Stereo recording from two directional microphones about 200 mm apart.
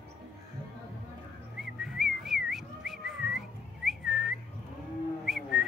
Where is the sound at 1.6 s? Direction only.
Centre (ahead or behind).